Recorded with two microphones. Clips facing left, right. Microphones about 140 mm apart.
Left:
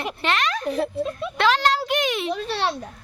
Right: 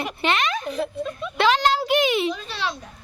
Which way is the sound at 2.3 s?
65° left (ahead or behind).